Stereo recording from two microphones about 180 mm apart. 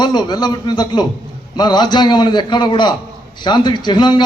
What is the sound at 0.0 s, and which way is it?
A man's voice, 25° left (ahead or behind).